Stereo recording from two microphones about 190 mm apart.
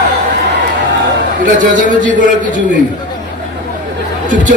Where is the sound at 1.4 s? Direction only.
45° right (ahead or behind).